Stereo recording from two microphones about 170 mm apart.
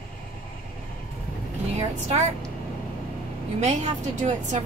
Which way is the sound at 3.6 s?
40° right (ahead or behind).